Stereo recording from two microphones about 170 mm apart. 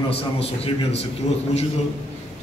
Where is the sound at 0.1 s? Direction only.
35° left (ahead or behind).